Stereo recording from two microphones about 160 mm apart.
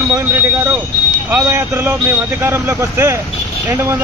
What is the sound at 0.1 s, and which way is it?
Speech, 15° right (ahead or behind).